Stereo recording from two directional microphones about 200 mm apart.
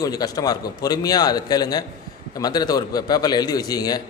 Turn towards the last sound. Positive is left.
turn(degrees=20)  # may be behind; listen again after turning